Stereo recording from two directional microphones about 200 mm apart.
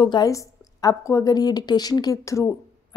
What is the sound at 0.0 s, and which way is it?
A woman's voice, 20° left (ahead or behind).